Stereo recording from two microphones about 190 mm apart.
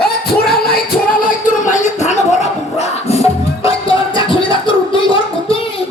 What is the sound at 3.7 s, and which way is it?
Music, 25° left (ahead or behind).